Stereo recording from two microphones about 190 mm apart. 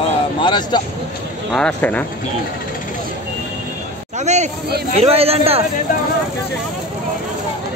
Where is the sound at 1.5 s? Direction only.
5° left (ahead or behind).